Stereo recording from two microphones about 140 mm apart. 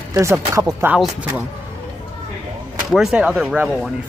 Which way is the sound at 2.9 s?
5° right (ahead or behind).